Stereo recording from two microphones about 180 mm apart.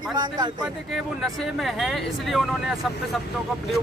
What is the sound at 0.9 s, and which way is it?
Speech, centre (ahead or behind).